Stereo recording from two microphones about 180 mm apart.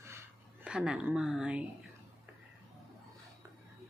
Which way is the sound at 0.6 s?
5° right (ahead or behind).